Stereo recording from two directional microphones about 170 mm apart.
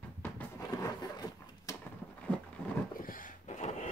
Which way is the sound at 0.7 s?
20° left (ahead or behind).